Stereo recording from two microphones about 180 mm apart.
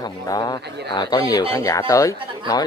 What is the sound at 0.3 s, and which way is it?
Speech, 20° left (ahead or behind).